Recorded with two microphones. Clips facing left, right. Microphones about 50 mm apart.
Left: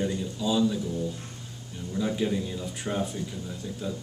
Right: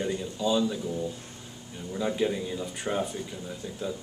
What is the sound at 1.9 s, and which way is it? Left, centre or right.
Speech, centre.